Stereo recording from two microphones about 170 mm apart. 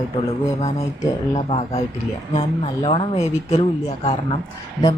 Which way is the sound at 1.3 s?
35° left (ahead or behind).